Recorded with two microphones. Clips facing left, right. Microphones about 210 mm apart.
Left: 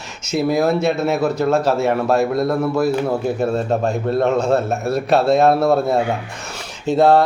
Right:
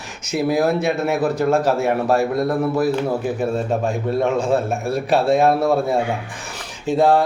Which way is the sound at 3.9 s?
10° right (ahead or behind).